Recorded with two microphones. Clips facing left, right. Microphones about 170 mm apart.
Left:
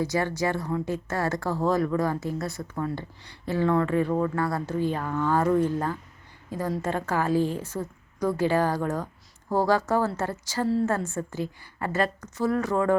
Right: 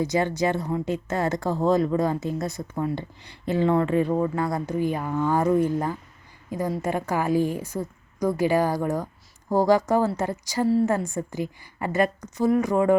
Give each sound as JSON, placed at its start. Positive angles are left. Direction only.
{"t": 0.0, "sound": "a woman's voice", "side_deg": -20}